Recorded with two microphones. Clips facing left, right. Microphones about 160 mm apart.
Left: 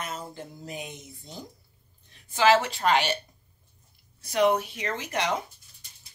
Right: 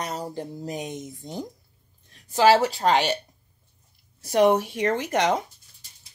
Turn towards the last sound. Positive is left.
turn(degrees=-45)  # may be behind; listen again after turning